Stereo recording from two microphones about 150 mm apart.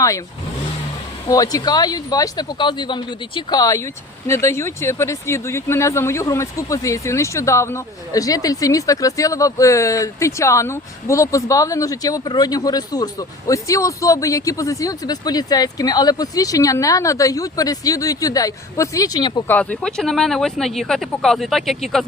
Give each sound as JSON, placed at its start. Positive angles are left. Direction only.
{"t": 1.3, "sound": "speech", "side_deg": 25}
{"t": 19.5, "sound": "speech", "side_deg": 10}